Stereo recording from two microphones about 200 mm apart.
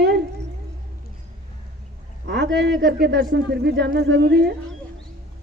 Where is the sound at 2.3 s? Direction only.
55° right (ahead or behind).